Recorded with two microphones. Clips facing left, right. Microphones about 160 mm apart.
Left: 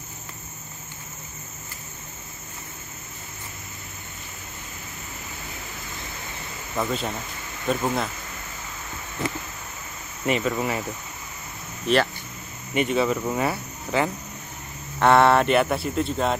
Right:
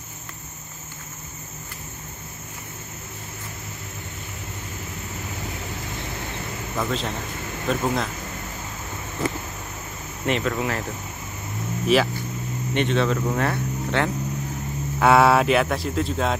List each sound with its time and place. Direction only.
6.8 s speech: 5° left (ahead or behind)
10.2 s speech: 5° left (ahead or behind)
11.9 s speech: 5° right (ahead or behind)
12.7 s speech: 5° left (ahead or behind)